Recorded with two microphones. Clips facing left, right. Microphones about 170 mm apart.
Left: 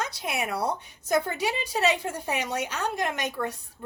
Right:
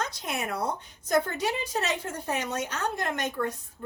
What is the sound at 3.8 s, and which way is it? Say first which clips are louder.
Music: right 1 dB; 15° left (ahead or behind).